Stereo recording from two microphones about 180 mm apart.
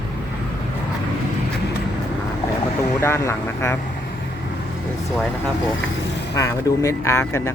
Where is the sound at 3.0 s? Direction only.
15° left (ahead or behind).